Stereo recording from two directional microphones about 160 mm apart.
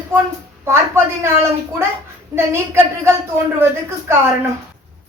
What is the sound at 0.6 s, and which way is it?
Speech, 15° right (ahead or behind).